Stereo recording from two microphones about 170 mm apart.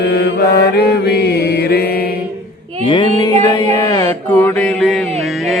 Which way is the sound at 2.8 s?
30° left (ahead or behind).